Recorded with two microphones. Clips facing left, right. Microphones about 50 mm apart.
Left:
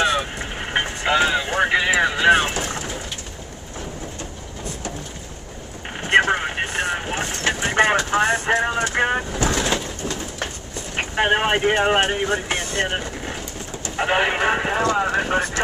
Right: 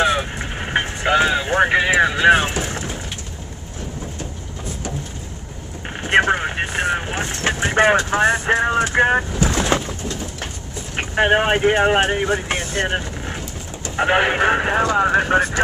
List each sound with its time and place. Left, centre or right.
0.0 s vehicle: centre
2.0 s vehicle: centre
5.9 s vehicle: centre
8.1 s speech: centre
11.0 s speech: centre